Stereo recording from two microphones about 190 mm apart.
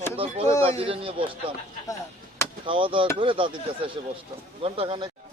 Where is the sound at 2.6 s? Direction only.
25° right (ahead or behind).